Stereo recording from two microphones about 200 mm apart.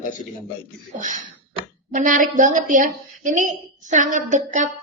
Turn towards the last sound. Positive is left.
turn(degrees=-40)  # may be behind; listen again after turning